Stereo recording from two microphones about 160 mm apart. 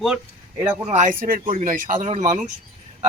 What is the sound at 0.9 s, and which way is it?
Speech, 50° right (ahead or behind).